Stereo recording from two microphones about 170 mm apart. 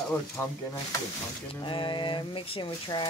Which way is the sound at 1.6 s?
30° left (ahead or behind).